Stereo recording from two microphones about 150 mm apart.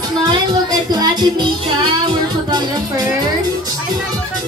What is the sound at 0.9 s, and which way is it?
Music, 25° right (ahead or behind).